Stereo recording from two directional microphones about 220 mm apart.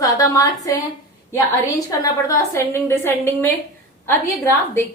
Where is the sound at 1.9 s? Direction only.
15° left (ahead or behind).